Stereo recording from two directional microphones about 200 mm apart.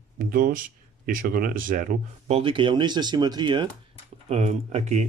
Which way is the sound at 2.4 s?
25° right (ahead or behind).